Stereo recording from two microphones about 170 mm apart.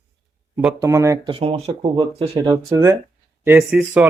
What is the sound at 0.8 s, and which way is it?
Speech, 15° right (ahead or behind).